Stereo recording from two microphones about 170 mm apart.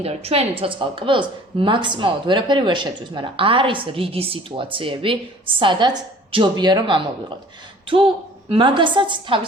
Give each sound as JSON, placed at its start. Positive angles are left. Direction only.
{"t": 0.0, "sound": "a woman's voice", "side_deg": -35}